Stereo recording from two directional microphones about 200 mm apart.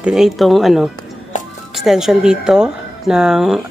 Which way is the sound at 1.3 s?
40° left (ahead or behind).